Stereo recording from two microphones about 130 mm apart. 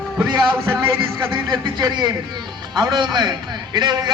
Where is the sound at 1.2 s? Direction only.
35° right (ahead or behind).